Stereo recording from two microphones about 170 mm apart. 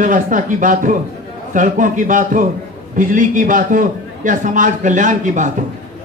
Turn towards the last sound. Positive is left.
turn(degrees=-50)  # may be behind; listen again after turning